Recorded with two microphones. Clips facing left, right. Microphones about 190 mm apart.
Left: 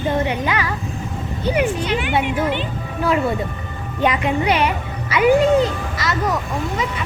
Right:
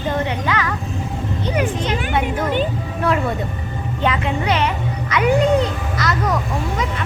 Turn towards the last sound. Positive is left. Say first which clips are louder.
# right 1 dB
turn(degrees=0)  # may be behind; listen again after turning